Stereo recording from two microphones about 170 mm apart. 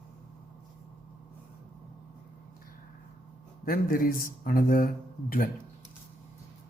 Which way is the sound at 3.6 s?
60° left (ahead or behind).